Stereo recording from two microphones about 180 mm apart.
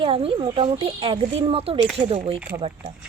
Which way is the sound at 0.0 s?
30° right (ahead or behind).